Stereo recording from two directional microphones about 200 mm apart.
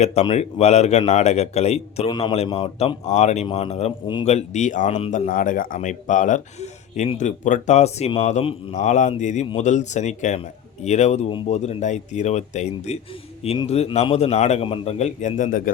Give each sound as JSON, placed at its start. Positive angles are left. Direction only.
{"t": 0.0, "sound": "speech", "side_deg": 30}